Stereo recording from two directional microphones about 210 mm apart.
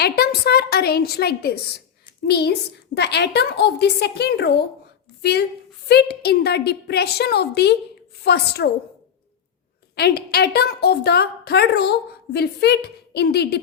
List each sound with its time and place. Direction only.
0.0 s a woman's voice: 50° left (ahead or behind)
9.9 s a woman's voice: 50° left (ahead or behind)